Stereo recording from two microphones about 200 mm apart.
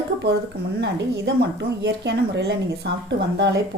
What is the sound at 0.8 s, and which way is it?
A woman's voice, 60° right (ahead or behind).